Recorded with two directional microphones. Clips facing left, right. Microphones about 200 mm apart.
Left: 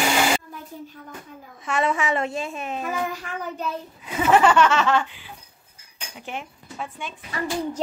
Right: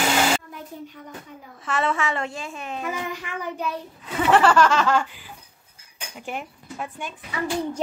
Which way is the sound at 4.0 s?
10° left (ahead or behind).